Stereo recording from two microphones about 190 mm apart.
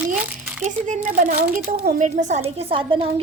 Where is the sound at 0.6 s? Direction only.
40° right (ahead or behind).